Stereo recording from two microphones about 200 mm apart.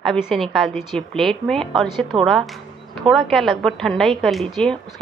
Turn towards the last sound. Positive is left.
turn(degrees=5)  # may be behind; listen again after turning